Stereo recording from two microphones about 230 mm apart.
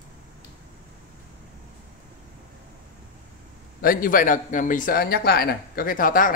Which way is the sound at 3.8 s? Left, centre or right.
Left.